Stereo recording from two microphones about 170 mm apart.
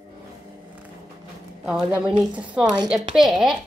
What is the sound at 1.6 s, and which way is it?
Speech, 5° right (ahead or behind).